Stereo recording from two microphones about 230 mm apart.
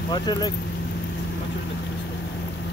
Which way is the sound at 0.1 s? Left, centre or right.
Centre.